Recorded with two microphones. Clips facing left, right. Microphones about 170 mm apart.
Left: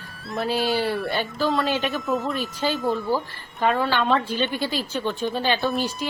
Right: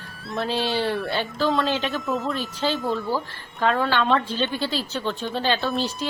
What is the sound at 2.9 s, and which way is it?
Speech, 15° left (ahead or behind).